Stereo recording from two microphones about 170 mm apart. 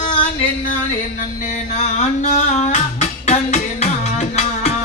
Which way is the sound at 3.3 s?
40° left (ahead or behind).